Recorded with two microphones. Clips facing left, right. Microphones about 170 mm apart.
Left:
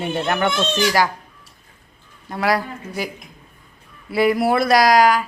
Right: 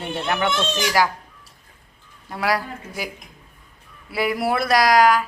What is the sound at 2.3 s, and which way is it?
Speech, 5° right (ahead or behind).